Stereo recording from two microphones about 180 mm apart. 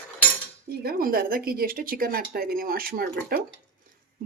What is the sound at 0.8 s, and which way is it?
Speech, 55° right (ahead or behind).